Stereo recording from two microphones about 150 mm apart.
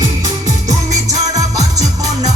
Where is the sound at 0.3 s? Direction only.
25° right (ahead or behind).